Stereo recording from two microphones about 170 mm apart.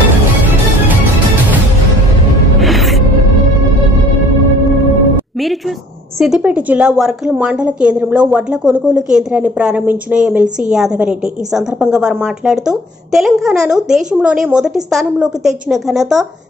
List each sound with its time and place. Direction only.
2.6 s music: centre (ahead or behind)
6.1 s a woman's voice: 5° right (ahead or behind)